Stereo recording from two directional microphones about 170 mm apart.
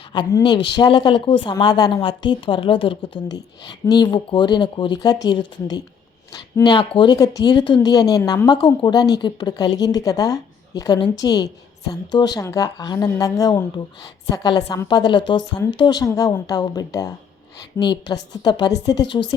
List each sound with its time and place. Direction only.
0.1 s a woman's voice: 25° left (ahead or behind)